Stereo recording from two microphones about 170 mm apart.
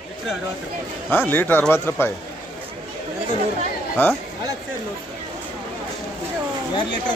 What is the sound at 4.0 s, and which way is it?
Speech, 10° left (ahead or behind).